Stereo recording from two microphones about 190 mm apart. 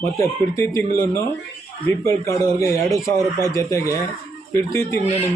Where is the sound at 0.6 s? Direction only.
15° left (ahead or behind).